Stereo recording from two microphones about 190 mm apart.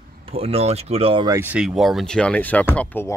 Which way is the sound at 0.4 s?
30° right (ahead or behind).